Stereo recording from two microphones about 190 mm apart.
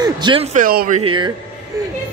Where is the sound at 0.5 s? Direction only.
50° right (ahead or behind).